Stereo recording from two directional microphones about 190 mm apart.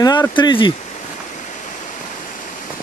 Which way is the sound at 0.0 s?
20° left (ahead or behind).